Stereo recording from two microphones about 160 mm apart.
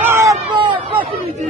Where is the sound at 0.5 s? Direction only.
30° right (ahead or behind).